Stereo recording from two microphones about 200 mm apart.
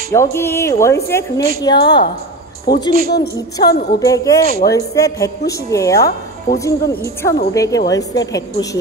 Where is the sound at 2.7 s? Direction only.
55° left (ahead or behind).